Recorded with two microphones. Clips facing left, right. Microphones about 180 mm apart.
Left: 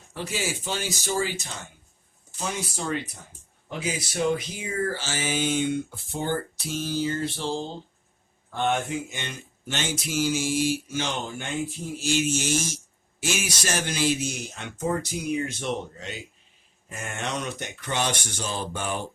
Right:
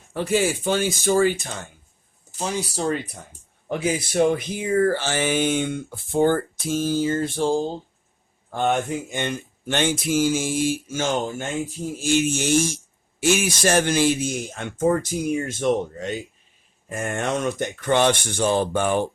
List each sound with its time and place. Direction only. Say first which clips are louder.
0.1 s speech: right 9 dB; 55° right (ahead or behind)
2.4 s speech: right 6 dB; 35° right (ahead or behind)
3.7 s speech: right 7 dB; 55° right (ahead or behind)